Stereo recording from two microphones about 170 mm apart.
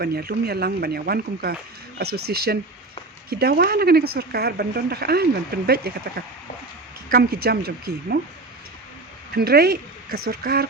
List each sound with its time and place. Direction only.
0.0 s speech: 65° right (ahead or behind)
9.3 s speech: 65° right (ahead or behind)